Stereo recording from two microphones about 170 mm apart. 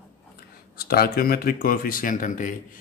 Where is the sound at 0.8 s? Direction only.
60° left (ahead or behind).